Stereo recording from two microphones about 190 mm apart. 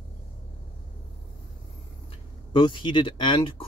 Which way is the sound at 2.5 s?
25° left (ahead or behind).